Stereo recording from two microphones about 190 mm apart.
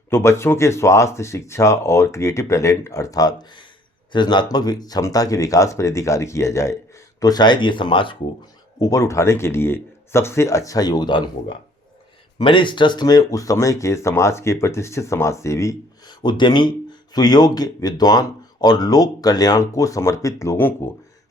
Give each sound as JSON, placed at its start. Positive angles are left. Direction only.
{"t": 0.1, "sound": "speech", "side_deg": 15}